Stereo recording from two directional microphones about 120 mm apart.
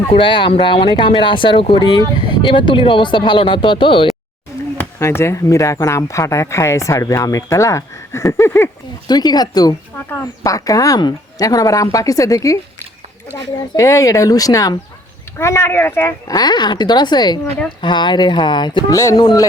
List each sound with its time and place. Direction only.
0.1 s speech: 45° left (ahead or behind)
4.8 s speech: 20° left (ahead or behind)
9.0 s speech: 35° left (ahead or behind); by 16.1 s 20° left (ahead or behind)
16.3 s speech: 35° left (ahead or behind)
18.9 s speech: 25° left (ahead or behind)